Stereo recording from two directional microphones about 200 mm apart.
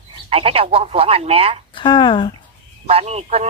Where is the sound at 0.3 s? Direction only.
30° right (ahead or behind).